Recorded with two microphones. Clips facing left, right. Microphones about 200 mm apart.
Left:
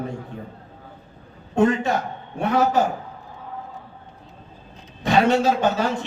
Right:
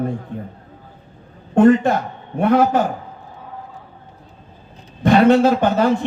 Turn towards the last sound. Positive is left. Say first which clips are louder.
# right 5 dB
turn(degrees=-55)  # may be behind; listen again after turning